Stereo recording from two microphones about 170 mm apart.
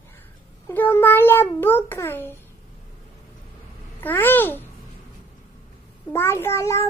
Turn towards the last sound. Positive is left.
turn(degrees=15)  # may be behind; listen again after turning